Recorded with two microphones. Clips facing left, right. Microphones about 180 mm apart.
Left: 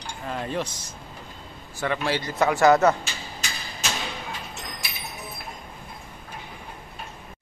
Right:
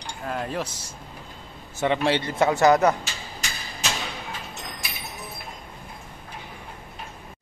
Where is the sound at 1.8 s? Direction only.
25° right (ahead or behind).